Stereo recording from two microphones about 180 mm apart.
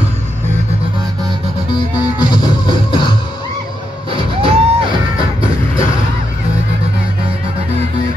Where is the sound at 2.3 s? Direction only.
25° left (ahead or behind).